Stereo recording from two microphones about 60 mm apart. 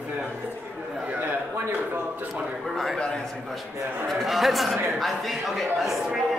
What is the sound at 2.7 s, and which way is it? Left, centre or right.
Speech, centre.